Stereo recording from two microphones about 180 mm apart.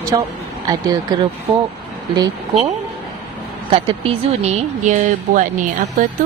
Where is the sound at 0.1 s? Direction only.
25° right (ahead or behind).